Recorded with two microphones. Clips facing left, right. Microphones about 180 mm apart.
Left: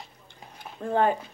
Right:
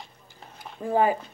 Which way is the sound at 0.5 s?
5° right (ahead or behind).